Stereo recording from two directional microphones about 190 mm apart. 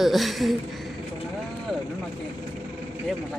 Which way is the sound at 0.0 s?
Centre (ahead or behind).